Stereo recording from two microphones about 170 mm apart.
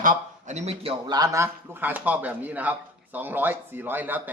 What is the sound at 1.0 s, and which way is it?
A man's voice, 25° right (ahead or behind).